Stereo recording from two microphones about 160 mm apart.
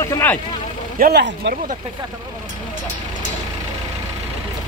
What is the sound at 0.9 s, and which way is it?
Speech, 75° right (ahead or behind).